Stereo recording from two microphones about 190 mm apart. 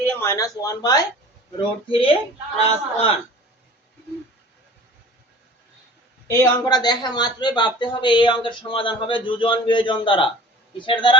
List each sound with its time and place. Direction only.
0.0 s a man's voice: 10° left (ahead or behind); by 3.1 s 30° left (ahead or behind)
6.2 s speech: 20° left (ahead or behind)